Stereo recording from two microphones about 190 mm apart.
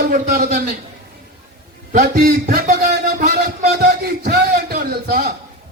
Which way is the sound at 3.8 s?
55° right (ahead or behind).